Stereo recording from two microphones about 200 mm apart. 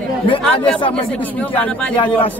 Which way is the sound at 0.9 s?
5° left (ahead or behind).